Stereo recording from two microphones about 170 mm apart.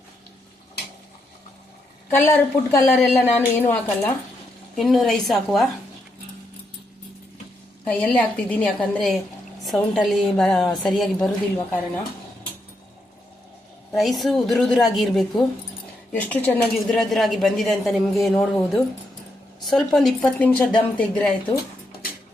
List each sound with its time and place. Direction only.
2.0 s speech: 10° left (ahead or behind)
4.8 s speech: centre (ahead or behind)
7.9 s speech: 10° left (ahead or behind)
11.3 s speech: 15° left (ahead or behind)
13.9 s speech: centre (ahead or behind)